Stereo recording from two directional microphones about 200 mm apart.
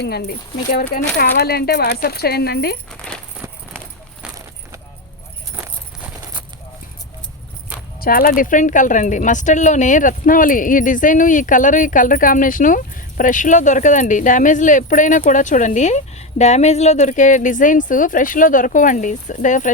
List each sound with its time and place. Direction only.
0.0 s speech: 55° left (ahead or behind)
3.1 s a sound: 5° left (ahead or behind)
8.0 s speech: 45° left (ahead or behind)